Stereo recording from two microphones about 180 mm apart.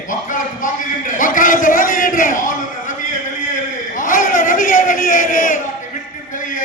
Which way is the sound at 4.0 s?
45° left (ahead or behind).